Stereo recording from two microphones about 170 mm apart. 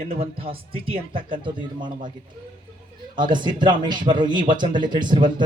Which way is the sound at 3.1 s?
25° right (ahead or behind).